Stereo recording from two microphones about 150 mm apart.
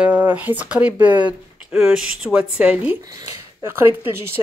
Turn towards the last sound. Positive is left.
turn(degrees=-15)  # may be behind; listen again after turning